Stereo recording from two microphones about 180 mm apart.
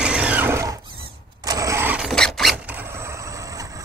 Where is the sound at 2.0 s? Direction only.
Centre (ahead or behind); by 3.7 s 20° right (ahead or behind).